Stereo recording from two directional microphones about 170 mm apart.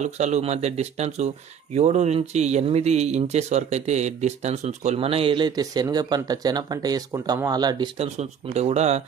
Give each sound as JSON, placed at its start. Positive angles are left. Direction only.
{"t": 0.0, "sound": "speech", "side_deg": -40}
{"t": 8.0, "sound": "speech", "side_deg": -40}